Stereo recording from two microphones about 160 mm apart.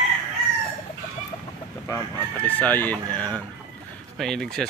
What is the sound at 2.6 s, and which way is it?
Speech, 10° left (ahead or behind).